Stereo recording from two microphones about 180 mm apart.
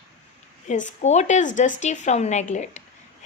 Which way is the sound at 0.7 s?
40° left (ahead or behind).